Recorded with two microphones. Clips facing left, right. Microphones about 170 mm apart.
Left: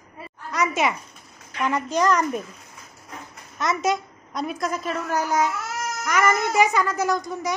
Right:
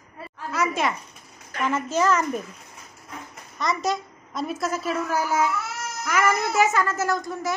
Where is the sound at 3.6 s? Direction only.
Centre (ahead or behind).